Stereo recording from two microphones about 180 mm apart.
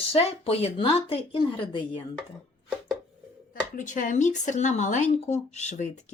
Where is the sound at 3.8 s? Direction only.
45° left (ahead or behind).